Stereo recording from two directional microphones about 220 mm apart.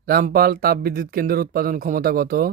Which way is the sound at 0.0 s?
40° right (ahead or behind).